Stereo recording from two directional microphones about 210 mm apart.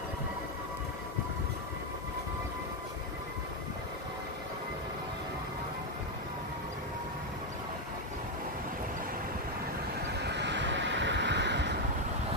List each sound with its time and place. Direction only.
10.1 s vehicle: 55° right (ahead or behind)